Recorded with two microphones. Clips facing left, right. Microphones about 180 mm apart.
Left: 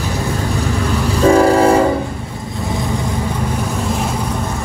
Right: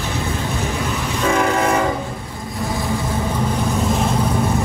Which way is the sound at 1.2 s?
35° left (ahead or behind).